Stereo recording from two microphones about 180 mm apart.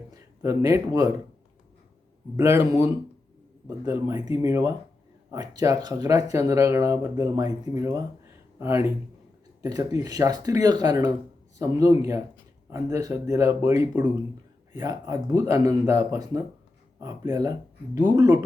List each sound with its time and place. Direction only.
0.1 s a man's voice: 20° right (ahead or behind)
2.3 s speech: 15° right (ahead or behind)